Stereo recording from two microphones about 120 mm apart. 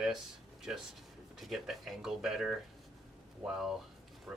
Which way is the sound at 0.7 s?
5° right (ahead or behind).